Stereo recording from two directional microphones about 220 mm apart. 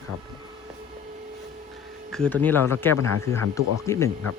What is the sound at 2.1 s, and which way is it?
Speech, 5° left (ahead or behind).